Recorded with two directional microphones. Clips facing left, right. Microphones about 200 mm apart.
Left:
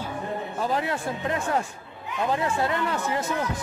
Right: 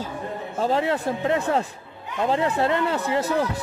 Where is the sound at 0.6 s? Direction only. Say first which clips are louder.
Right 6 dB; 25° right (ahead or behind).